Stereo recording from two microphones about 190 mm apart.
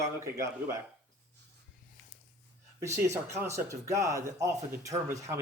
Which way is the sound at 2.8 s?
15° right (ahead or behind).